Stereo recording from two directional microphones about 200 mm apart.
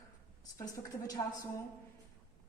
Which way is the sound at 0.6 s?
15° left (ahead or behind).